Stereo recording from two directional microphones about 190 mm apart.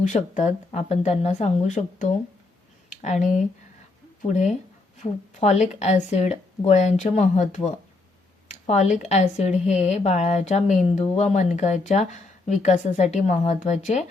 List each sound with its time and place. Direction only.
0.1 s a woman's voice: 40° left (ahead or behind)
2.9 s a sound: 40° left (ahead or behind)
4.3 s a woman's voice: 40° left (ahead or behind)
5.0 s a woman's voice: 30° left (ahead or behind)